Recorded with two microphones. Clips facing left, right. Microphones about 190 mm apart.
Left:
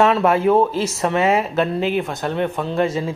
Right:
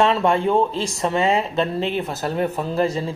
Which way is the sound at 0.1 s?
5° left (ahead or behind).